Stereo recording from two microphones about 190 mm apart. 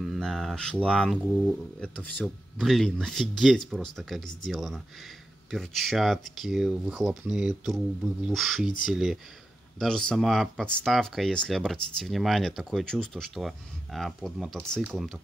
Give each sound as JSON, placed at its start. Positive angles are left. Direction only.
{"t": 0.0, "sound": "speech", "side_deg": 0}